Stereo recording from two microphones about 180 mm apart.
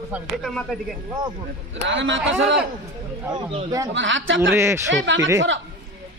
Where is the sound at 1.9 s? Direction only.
90° right.